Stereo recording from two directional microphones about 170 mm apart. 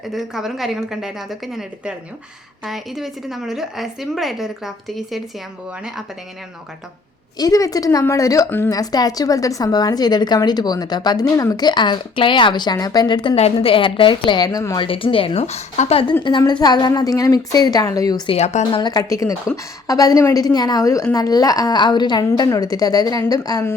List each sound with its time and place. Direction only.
0.1 s a woman's voice: centre (ahead or behind)
7.3 s a woman's voice: 20° left (ahead or behind)
14.8 s a woman's voice: 30° left (ahead or behind)
18.3 s a woman's voice: 40° left (ahead or behind)
18.8 s a woman's voice: 25° left (ahead or behind)